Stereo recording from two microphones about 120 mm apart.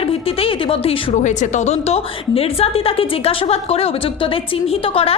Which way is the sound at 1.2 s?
85° left.